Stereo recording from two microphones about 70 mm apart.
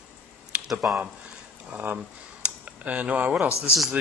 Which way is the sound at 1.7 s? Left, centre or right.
Right.